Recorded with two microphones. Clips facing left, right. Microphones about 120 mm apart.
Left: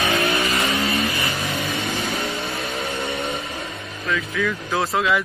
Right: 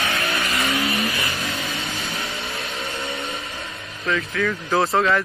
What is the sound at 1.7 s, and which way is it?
Vehicle, 60° left (ahead or behind).